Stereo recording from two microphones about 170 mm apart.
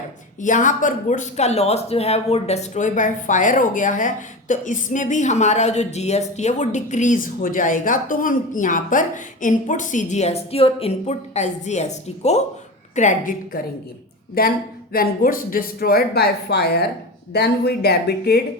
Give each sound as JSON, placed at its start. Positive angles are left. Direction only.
{"t": 0.4, "sound": "speech", "side_deg": 50}
{"t": 14.4, "sound": "speech", "side_deg": 65}